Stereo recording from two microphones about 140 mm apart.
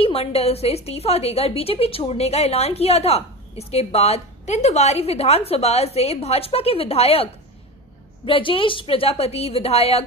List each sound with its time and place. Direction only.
0.0 s a woman's voice: 45° left (ahead or behind)
8.3 s a woman's voice: 40° left (ahead or behind)